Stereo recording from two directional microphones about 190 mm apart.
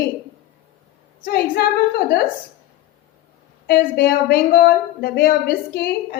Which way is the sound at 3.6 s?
55° left (ahead or behind).